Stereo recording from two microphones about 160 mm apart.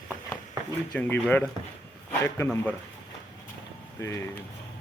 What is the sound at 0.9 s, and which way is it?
A man's voice, 10° left (ahead or behind).